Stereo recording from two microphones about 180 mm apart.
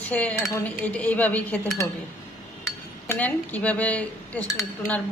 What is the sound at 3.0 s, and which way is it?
Dishes, 10° left (ahead or behind).